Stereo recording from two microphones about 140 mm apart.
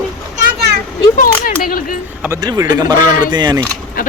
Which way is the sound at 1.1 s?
85° left.